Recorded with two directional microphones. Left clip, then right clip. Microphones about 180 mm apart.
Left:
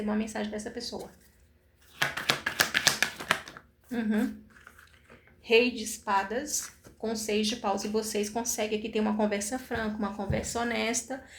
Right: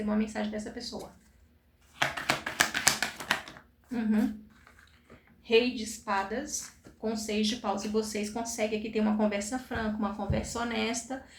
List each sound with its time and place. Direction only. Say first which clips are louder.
0.1 s speech: right 2 dB; 40° left (ahead or behind)
2.0 s a sound: left 1 dB; 15° left (ahead or behind)
5.5 s speech: left 2 dB; 35° left (ahead or behind)